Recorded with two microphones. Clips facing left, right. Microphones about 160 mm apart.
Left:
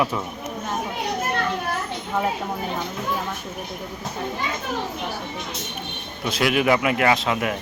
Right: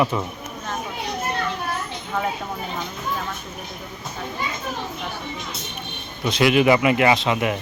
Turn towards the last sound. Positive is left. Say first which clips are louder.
# right 2 dB
turn(degrees=0)  # may be behind; listen again after turning